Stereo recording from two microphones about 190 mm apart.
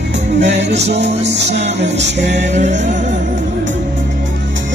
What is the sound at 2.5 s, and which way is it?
Music, 40° right (ahead or behind).